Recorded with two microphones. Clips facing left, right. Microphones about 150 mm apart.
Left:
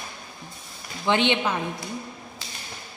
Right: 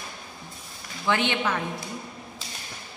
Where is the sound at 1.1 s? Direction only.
20° left (ahead or behind).